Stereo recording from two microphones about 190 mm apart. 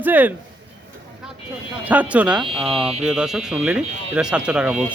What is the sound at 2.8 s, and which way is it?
Speech, 30° right (ahead or behind).